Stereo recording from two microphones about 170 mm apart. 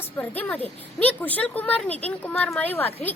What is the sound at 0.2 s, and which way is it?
A woman's voice, 10° left (ahead or behind).